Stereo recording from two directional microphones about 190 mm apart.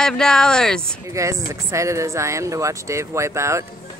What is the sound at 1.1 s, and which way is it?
Speech, 15° right (ahead or behind).